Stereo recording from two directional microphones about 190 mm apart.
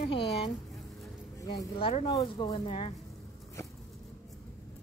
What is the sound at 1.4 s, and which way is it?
Speech, 20° left (ahead or behind).